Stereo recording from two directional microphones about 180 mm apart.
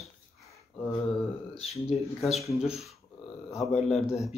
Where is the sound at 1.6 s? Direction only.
35° left (ahead or behind).